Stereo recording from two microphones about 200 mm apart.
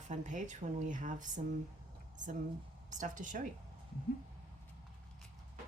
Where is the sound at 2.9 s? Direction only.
40° right (ahead or behind).